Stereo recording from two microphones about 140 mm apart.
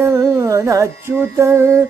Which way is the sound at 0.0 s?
20° right (ahead or behind).